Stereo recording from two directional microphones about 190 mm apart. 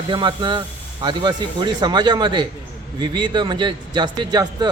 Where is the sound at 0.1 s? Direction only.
25° right (ahead or behind).